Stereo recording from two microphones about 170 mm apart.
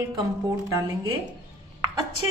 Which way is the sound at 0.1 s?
20° right (ahead or behind).